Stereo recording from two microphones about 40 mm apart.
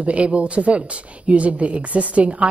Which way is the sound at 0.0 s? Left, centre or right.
Right.